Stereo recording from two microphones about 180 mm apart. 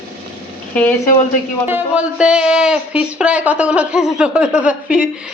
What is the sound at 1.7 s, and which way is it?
A man's voice, 5° right (ahead or behind).